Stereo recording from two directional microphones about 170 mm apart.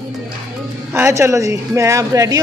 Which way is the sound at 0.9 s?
15° right (ahead or behind).